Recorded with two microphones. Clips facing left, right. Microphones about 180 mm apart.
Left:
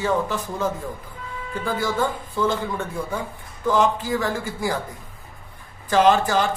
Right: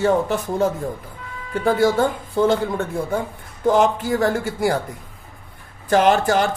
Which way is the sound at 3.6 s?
55° right (ahead or behind).